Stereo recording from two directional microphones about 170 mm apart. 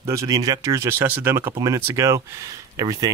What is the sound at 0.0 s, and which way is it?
Speech, 15° right (ahead or behind).